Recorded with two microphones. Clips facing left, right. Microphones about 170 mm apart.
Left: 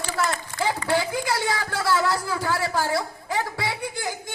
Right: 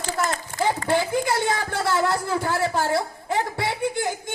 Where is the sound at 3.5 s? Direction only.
55° right (ahead or behind).